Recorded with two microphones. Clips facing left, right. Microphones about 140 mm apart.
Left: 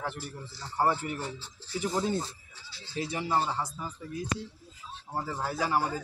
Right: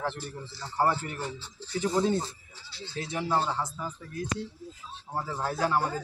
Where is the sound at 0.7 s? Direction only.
15° left (ahead or behind).